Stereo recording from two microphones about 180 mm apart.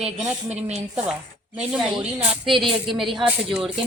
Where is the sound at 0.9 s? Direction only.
5° right (ahead or behind).